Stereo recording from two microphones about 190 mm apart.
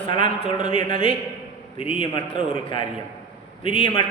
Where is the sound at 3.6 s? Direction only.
30° left (ahead or behind).